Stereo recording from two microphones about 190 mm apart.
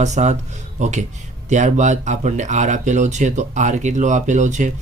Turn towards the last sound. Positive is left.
turn(degrees=-40)  # may be behind; listen again after turning